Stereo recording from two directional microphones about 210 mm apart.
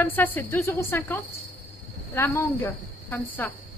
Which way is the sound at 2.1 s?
10° left (ahead or behind).